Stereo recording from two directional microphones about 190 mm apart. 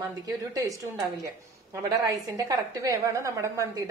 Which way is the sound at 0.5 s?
20° right (ahead or behind).